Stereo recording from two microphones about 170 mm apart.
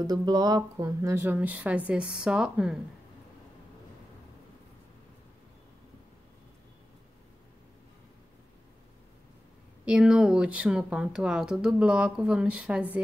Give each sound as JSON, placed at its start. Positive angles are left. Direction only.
{"t": 0.0, "sound": "a woman's voice", "side_deg": -25}
{"t": 9.8, "sound": "speech", "side_deg": -5}